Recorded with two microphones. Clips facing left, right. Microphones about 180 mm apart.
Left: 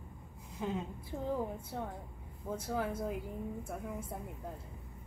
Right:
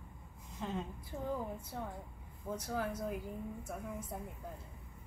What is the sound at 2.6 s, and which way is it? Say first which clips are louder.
Speech: left 3 dB; 25° left (ahead or behind).